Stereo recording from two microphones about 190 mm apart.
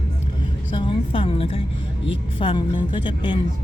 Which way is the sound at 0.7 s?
25° left (ahead or behind).